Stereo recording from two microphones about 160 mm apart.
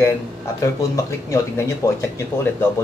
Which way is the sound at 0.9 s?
20° left (ahead or behind).